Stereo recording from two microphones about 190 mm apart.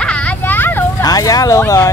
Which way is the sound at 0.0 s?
5° left (ahead or behind).